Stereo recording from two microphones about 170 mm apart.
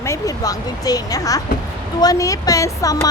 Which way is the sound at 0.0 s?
20° left (ahead or behind).